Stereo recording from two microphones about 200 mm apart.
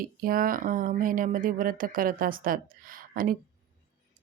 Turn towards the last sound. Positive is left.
turn(degrees=-45)  # may be behind; listen again after turning